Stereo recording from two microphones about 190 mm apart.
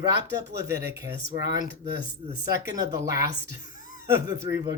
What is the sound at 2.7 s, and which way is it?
Speech, 20° right (ahead or behind).